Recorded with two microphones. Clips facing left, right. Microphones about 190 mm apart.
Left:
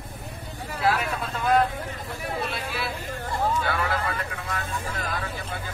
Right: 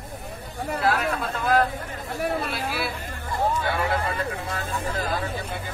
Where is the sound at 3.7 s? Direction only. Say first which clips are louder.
Right 2 dB; 25° right (ahead or behind).